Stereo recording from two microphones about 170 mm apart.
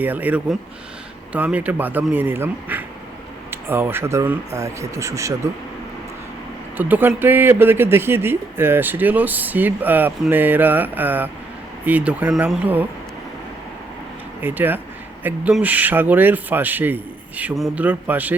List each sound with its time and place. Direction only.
0.0 s speech: 10° right (ahead or behind)
6.7 s speech: 10° right (ahead or behind)
14.4 s speech: 10° right (ahead or behind)